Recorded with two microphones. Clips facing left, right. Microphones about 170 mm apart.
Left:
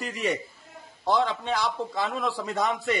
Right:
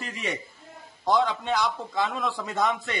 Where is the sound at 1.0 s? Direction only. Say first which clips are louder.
Right 1 dB; 30° left (ahead or behind).